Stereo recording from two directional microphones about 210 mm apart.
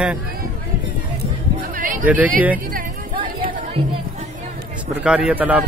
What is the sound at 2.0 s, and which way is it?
Speech, 5° right (ahead or behind).